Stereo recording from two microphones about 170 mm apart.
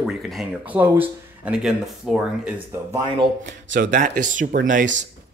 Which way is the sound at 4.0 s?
50° right (ahead or behind).